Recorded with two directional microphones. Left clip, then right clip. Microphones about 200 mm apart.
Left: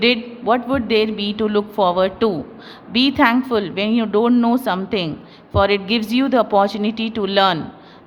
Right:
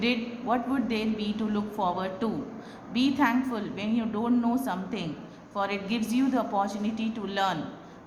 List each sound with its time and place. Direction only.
0.0 s a woman's voice: 45° left (ahead or behind)